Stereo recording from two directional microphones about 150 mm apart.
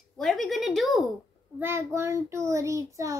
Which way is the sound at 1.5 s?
15° right (ahead or behind).